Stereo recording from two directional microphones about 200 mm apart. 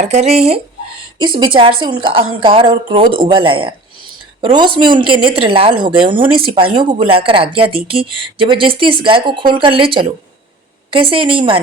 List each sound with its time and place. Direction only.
0.0 s speech: 35° right (ahead or behind)